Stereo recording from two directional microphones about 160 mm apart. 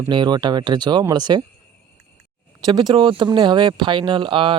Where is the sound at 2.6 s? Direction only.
25° right (ahead or behind).